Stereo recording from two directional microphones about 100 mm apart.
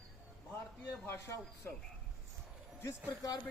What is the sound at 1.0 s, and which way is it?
Speech, 25° left (ahead or behind).